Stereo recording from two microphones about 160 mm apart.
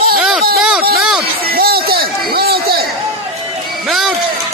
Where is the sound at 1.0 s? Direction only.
5° right (ahead or behind).